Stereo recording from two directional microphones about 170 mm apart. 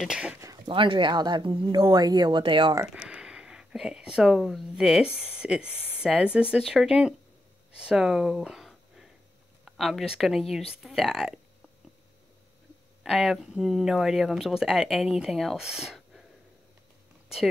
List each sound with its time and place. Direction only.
0.0 s speech: 5° right (ahead or behind)
0.4 s speech: 25° right (ahead or behind)
2.9 s speech: 5° right (ahead or behind)
5.7 s speech: 10° left (ahead or behind)
5.9 s speech: 5° right (ahead or behind)
13.0 s speech: centre (ahead or behind)